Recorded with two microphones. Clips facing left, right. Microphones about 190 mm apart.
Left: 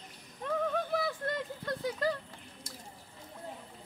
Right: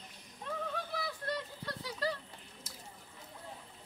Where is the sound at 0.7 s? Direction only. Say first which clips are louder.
Left 7 dB; 50° left (ahead or behind).